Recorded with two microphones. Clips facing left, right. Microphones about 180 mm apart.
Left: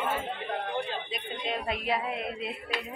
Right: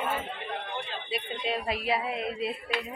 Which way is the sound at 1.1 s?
5° right (ahead or behind).